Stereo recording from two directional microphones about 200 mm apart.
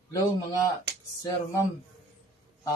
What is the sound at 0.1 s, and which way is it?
Speech, 20° left (ahead or behind).